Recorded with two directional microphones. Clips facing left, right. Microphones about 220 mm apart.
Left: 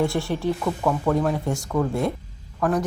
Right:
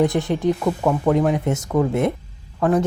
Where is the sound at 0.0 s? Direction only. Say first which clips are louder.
Right 4 dB; 20° right (ahead or behind).